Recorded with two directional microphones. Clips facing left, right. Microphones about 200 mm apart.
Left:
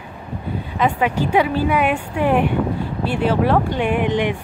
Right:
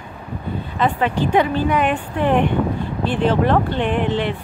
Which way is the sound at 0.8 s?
10° left (ahead or behind).